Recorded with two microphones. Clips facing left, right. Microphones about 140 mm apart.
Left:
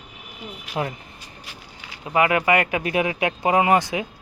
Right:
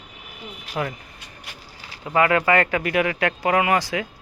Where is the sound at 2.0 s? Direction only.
20° left (ahead or behind).